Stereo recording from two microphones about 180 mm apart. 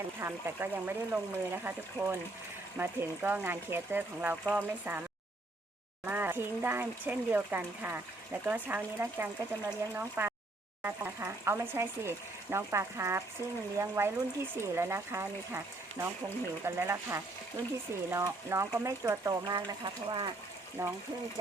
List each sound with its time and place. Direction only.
0.2 s speech: 15° right (ahead or behind)
6.1 s speech: 10° right (ahead or behind)